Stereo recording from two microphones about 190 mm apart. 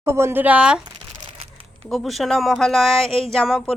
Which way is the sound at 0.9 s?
25° right (ahead or behind).